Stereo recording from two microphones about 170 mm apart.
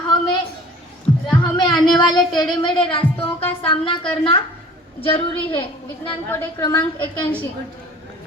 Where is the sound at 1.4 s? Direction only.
25° left (ahead or behind).